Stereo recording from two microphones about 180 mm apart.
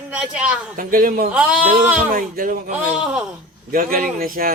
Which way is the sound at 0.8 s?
50° right (ahead or behind).